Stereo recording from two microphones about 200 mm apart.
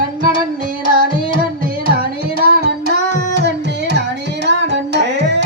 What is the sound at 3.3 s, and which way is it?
Music, 60° right (ahead or behind).